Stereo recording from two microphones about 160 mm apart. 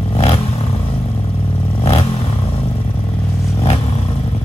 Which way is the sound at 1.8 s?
40° left (ahead or behind).